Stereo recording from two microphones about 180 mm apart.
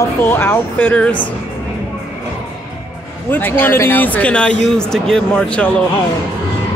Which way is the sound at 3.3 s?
10° left (ahead or behind).